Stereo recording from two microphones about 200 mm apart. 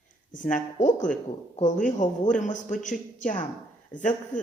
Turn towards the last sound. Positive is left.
turn(degrees=40)  # may be behind; listen again after turning